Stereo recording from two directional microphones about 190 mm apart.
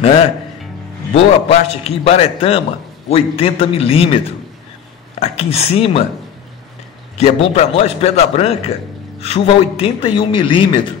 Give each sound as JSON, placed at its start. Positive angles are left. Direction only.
{"t": 1.1, "sound": "a man's voice", "side_deg": 35}
{"t": 5.2, "sound": "a man's voice", "side_deg": 35}
{"t": 7.2, "sound": "a man's voice", "side_deg": 35}